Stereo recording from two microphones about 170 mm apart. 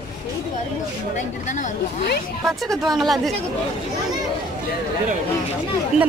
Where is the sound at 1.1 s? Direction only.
45° left (ahead or behind).